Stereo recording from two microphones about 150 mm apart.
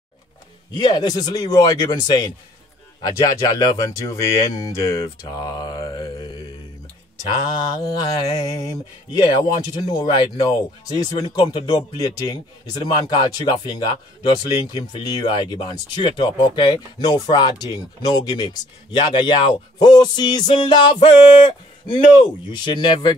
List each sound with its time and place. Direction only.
0.7 s speech: 30° left (ahead or behind)
7.2 s speech: 30° left (ahead or behind)
9.2 s speech: 30° left (ahead or behind)